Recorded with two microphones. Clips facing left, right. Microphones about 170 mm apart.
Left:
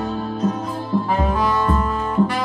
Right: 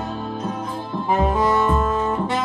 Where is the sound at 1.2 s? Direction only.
20° right (ahead or behind).